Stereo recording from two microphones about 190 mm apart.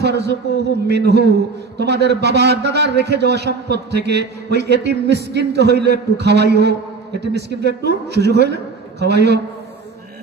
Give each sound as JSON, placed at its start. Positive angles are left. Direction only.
{"t": 0.0, "sound": "a man's voice", "side_deg": -60}